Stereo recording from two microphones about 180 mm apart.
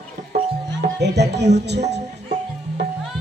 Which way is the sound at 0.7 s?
70° right (ahead or behind).